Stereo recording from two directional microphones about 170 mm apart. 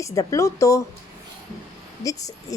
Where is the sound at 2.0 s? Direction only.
20° left (ahead or behind).